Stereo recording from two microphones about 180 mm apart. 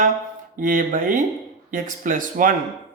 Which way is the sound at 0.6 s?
50° right (ahead or behind).